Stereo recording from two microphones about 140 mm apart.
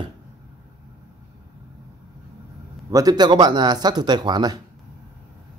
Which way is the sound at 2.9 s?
30° right (ahead or behind).